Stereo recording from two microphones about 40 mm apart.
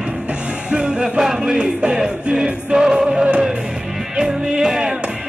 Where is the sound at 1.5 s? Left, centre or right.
Right.